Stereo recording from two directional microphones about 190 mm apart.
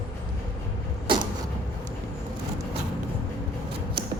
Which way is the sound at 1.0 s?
25° right (ahead or behind).